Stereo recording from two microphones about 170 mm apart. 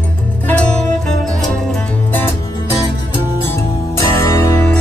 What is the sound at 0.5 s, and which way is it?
Music, 5° left (ahead or behind).